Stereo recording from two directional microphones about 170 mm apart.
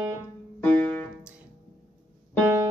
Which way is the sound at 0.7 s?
10° left (ahead or behind).